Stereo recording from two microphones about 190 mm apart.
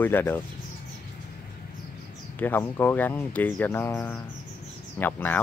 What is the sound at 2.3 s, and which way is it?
Speech, 10° left (ahead or behind).